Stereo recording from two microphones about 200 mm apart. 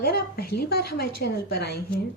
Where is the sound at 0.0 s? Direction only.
50° left (ahead or behind).